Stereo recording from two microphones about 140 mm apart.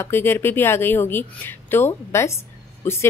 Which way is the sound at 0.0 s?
15° left (ahead or behind).